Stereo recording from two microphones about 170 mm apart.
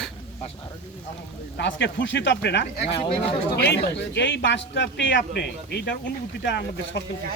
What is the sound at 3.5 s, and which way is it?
A man's voice, 75° left (ahead or behind).